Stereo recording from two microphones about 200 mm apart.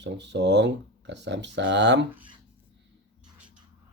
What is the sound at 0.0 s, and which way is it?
Speech, 60° right (ahead or behind).